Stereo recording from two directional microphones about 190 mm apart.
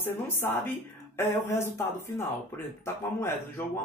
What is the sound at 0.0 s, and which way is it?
Speech, 10° left (ahead or behind).